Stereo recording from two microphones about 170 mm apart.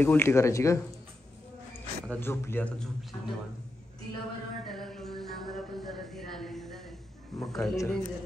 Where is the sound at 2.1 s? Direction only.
15° left (ahead or behind).